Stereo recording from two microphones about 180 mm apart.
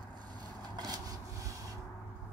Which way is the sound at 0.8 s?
20° right (ahead or behind).